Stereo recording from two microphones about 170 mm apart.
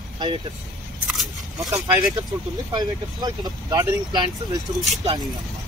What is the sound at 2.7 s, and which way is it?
Speech, 25° right (ahead or behind).